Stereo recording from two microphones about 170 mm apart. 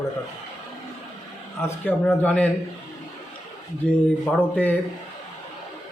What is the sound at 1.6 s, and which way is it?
Speech, 15° left (ahead or behind).